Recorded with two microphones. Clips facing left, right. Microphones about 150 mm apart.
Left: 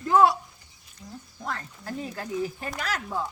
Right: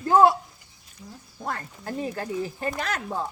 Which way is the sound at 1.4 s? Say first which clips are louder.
Right 3 dB; 40° right (ahead or behind).